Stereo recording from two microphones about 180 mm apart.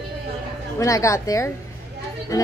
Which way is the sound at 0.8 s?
15° left (ahead or behind).